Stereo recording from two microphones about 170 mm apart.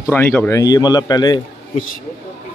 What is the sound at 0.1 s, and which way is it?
A man's voice, 10° left (ahead or behind).